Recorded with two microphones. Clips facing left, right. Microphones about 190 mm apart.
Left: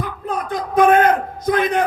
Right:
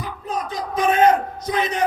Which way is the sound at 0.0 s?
55° left (ahead or behind).